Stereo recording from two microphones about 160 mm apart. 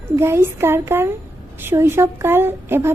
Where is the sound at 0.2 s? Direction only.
15° right (ahead or behind).